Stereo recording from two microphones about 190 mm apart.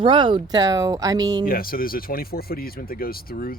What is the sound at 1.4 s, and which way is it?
Speech, 50° left (ahead or behind).